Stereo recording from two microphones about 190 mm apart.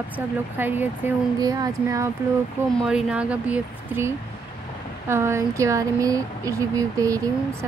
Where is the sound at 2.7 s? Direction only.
5° right (ahead or behind).